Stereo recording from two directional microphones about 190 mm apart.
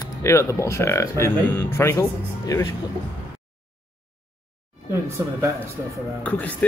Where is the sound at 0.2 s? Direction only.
15° left (ahead or behind).